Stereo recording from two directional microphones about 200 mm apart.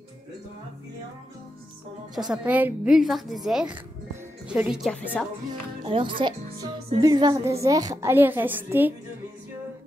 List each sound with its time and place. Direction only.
2.3 s a woman's voice: 5° right (ahead or behind)
5.9 s a woman's voice: 25° right (ahead or behind); by 8.9 s 10° right (ahead or behind)